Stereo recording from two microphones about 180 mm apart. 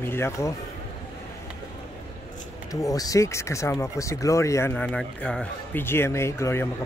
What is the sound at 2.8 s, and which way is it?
Speech, 20° left (ahead or behind).